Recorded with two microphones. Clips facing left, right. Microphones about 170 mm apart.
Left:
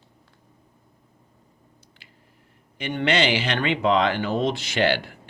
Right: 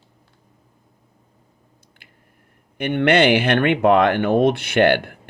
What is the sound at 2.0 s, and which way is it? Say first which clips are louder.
Squish: right 2 dB; 55° right (ahead or behind).